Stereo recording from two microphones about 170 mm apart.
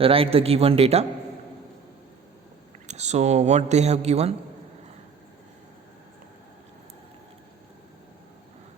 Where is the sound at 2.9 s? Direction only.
40° right (ahead or behind).